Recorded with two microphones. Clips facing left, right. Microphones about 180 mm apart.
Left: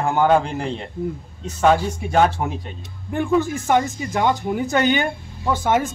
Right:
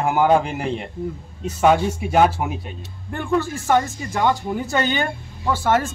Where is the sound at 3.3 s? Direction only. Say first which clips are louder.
Even; 15° left (ahead or behind).